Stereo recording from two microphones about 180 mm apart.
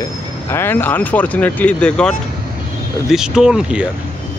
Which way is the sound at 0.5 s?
15° left (ahead or behind).